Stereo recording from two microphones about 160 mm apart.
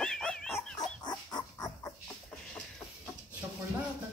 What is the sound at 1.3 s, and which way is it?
Dog, 25° left (ahead or behind).